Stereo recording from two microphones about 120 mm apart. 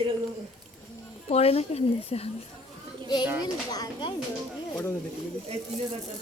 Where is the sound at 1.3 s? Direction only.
60° left (ahead or behind).